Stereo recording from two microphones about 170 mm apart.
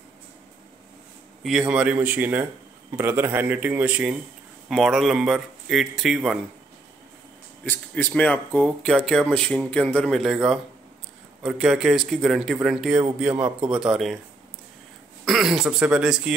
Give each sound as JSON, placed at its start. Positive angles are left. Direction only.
{"t": 1.4, "sound": "speech", "side_deg": -5}
{"t": 7.6, "sound": "speech", "side_deg": 10}
{"t": 15.2, "sound": "speech", "side_deg": 0}